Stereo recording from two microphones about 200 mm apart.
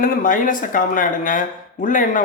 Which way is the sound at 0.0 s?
45° left (ahead or behind).